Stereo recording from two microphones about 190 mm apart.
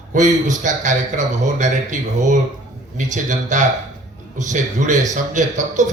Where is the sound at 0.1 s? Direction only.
40° right (ahead or behind).